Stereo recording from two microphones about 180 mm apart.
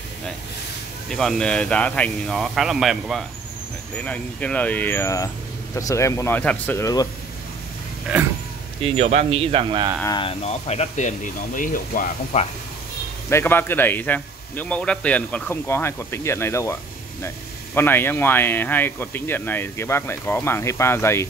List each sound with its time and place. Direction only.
1.1 s speech: centre (ahead or behind); by 7.1 s 20° left (ahead or behind)
8.8 s speech: 35° right (ahead or behind)
10.0 s speech: 25° left (ahead or behind); by 12.4 s 50° left (ahead or behind)
13.3 s speech: 10° left (ahead or behind)
17.7 s speech: 10° left (ahead or behind)